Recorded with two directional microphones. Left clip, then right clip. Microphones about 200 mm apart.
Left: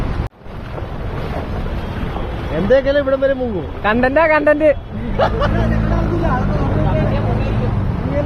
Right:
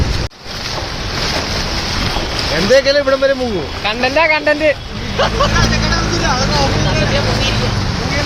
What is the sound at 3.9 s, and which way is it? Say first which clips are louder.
Speech: even; 25° left (ahead or behind).